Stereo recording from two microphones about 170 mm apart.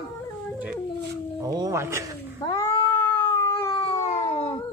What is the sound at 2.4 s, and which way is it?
Cat, 20° left (ahead or behind).